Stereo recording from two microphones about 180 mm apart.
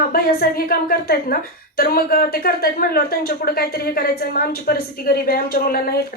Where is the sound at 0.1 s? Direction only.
55° left (ahead or behind).